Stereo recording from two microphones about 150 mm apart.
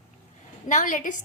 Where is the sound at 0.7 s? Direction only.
55° left (ahead or behind).